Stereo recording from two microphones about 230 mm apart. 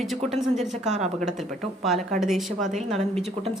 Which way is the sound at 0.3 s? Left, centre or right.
Centre.